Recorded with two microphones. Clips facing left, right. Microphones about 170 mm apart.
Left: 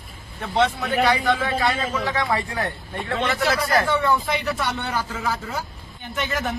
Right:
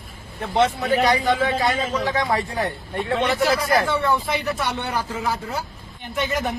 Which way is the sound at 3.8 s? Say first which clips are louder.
Even; centre (ahead or behind).